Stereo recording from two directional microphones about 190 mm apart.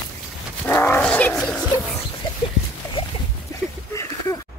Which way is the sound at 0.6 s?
10° left (ahead or behind).